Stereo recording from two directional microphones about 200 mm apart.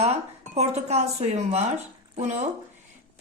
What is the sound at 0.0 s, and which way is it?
Speech, 35° right (ahead or behind).